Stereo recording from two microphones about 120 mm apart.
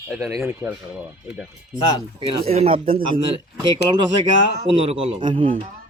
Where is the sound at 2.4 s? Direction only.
60° right (ahead or behind).